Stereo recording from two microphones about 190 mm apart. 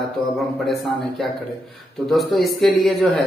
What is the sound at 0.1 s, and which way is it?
A man's voice, centre (ahead or behind).